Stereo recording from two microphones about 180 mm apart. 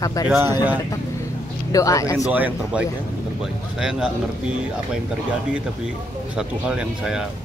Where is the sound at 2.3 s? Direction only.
10° right (ahead or behind).